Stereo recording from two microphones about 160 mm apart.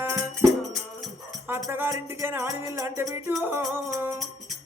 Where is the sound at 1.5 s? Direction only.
15° right (ahead or behind).